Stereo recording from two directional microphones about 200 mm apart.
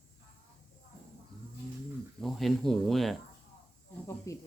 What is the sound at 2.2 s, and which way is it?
Speech, centre (ahead or behind).